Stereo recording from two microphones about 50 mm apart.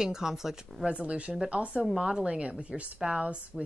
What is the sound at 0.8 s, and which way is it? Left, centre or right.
A woman's voice, right.